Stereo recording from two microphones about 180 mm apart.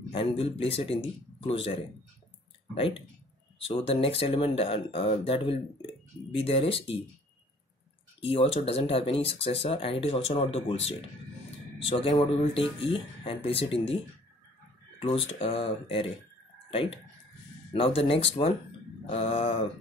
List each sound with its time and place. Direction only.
0.1 s speech: 30° left (ahead or behind)
8.2 s speech: 30° left (ahead or behind)
15.0 s speech: 30° left (ahead or behind)